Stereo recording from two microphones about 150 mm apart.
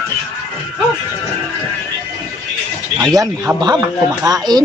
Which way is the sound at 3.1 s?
25° right (ahead or behind).